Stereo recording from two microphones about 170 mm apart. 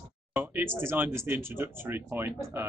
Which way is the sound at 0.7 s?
10° right (ahead or behind).